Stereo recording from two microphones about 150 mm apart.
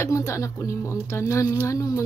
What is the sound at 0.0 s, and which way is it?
Speech, 20° left (ahead or behind).